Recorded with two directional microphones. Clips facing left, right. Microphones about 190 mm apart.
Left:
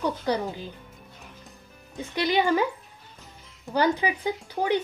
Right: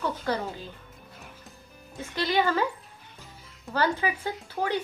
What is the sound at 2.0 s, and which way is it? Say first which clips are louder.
Speech: left 2 dB; 15° left (ahead or behind).